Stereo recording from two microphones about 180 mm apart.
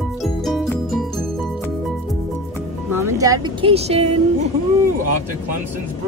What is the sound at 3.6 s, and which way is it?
Speech, 35° right (ahead or behind).